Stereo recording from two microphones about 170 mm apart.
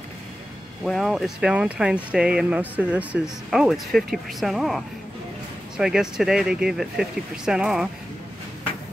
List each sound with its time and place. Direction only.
0.8 s speech: centre (ahead or behind)